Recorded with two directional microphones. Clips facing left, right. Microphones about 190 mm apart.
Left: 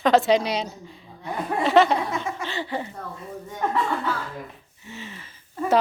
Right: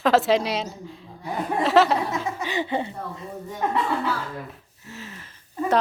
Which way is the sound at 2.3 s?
20° right (ahead or behind).